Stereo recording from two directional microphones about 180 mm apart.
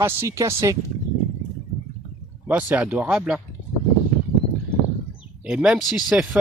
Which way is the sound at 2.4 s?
10° right (ahead or behind).